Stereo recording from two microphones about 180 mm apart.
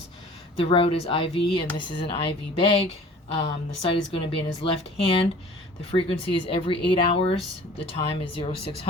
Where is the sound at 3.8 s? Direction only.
30° left (ahead or behind).